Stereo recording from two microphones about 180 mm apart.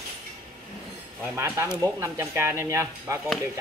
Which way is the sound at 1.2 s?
15° right (ahead or behind).